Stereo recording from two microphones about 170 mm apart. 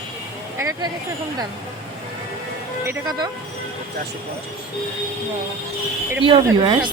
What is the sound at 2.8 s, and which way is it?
Speech, 20° right (ahead or behind).